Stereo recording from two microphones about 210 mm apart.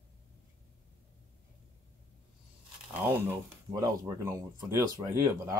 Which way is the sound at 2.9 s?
10° right (ahead or behind).